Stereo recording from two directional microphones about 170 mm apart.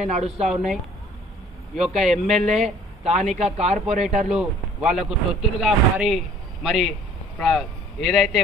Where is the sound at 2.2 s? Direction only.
40° right (ahead or behind).